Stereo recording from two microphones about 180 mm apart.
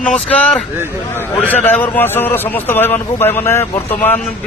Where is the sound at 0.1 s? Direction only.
5° left (ahead or behind).